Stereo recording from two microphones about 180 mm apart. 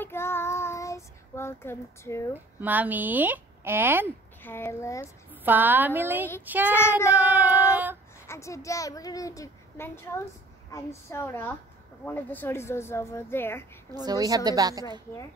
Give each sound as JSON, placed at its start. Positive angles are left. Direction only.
{"t": 0.0, "sound": "child singing", "side_deg": 15}
{"t": 2.3, "sound": "speech", "side_deg": -10}
{"t": 4.4, "sound": "a woman's voice", "side_deg": 10}
{"t": 5.0, "sound": "speech", "side_deg": -10}
{"t": 6.7, "sound": "a woman's voice", "side_deg": 15}
{"t": 7.1, "sound": "child singing", "side_deg": -10}
{"t": 8.3, "sound": "a child's voice", "side_deg": 15}
{"t": 13.9, "sound": "a woman's voice", "side_deg": -20}